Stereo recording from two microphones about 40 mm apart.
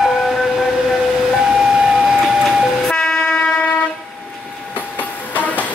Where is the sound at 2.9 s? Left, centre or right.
Left.